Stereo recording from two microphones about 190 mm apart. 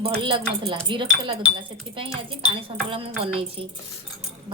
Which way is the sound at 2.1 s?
30° right (ahead or behind).